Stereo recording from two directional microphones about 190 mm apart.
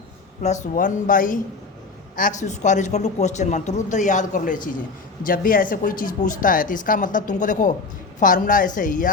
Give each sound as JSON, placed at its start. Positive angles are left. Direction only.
{"t": 0.4, "sound": "a man's voice", "side_deg": 40}